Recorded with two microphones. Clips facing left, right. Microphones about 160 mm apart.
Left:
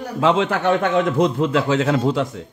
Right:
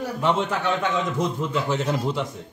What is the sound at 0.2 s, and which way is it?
Speech, 90° left.